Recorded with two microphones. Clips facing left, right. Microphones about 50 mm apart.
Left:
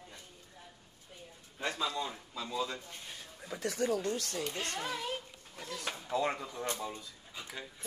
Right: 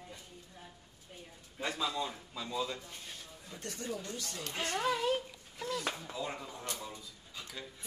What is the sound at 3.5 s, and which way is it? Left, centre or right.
Speech, left.